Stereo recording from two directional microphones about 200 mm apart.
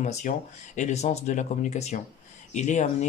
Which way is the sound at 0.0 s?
35° left (ahead or behind).